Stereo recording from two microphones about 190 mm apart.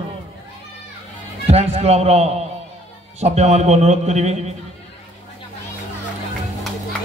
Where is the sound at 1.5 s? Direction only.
35° right (ahead or behind).